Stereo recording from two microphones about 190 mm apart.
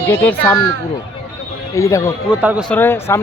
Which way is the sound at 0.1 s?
10° left (ahead or behind).